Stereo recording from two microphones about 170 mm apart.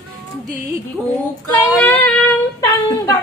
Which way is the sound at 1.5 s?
10° left (ahead or behind).